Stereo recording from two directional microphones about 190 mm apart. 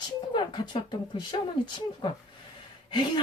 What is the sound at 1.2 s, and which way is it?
Speech, 25° left (ahead or behind).